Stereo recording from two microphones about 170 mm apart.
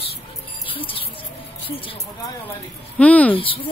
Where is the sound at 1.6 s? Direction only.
35° left (ahead or behind).